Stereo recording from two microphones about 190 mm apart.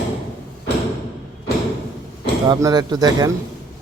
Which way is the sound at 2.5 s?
20° right (ahead or behind).